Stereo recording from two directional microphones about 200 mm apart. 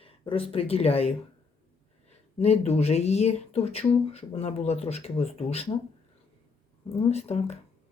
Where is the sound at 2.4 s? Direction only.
30° left (ahead or behind).